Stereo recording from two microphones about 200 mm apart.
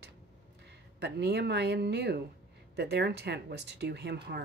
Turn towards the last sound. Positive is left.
turn(degrees=-55)  # may be behind; listen again after turning